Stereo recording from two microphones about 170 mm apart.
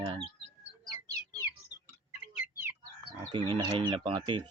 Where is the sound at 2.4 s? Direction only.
10° right (ahead or behind).